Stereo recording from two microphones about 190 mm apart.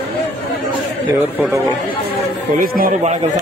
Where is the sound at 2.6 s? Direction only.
45° right (ahead or behind).